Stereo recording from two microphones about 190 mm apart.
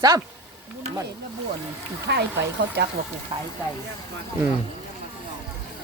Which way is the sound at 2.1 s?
60° right (ahead or behind).